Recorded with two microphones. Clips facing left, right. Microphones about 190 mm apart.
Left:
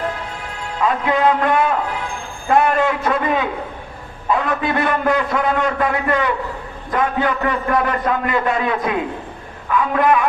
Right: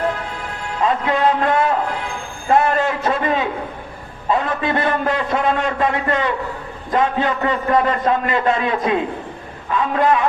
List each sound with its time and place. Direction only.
0.8 s a man's voice: 25° right (ahead or behind)